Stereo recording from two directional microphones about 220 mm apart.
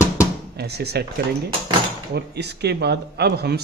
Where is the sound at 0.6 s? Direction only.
50° right (ahead or behind).